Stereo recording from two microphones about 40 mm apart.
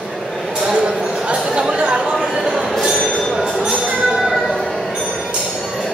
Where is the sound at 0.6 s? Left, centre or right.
Right.